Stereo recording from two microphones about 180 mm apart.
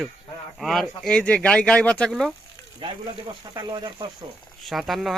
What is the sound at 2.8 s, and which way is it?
Speech, 30° right (ahead or behind).